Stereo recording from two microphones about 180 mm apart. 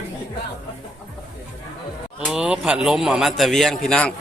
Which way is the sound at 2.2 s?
5° right (ahead or behind).